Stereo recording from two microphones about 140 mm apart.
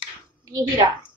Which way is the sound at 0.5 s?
30° right (ahead or behind).